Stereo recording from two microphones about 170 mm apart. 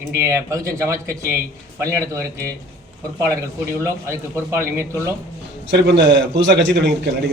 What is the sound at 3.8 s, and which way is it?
Speech, 15° right (ahead or behind).